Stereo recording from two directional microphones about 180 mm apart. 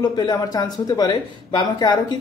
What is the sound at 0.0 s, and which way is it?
Speech, 20° left (ahead or behind).